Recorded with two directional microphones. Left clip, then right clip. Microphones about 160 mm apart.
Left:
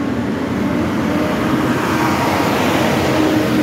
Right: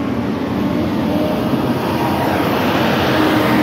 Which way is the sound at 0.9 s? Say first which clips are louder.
Even; 10° right (ahead or behind).